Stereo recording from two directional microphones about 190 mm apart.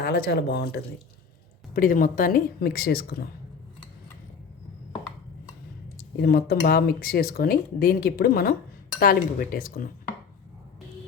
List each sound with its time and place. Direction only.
0.0 s speech: 60° left (ahead or behind)
1.7 s speech: 45° left (ahead or behind)
6.2 s speech: 55° left (ahead or behind)